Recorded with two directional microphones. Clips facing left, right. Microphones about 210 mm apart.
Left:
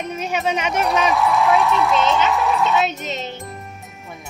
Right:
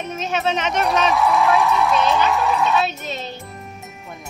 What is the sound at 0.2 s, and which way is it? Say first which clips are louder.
Speech: right 1 dB; 15° left (ahead or behind).